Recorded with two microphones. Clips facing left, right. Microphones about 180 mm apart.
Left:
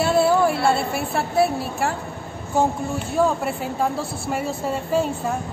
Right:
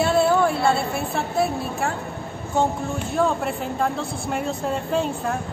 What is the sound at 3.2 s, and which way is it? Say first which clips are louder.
A man's voice: left 2 dB; centre (ahead or behind).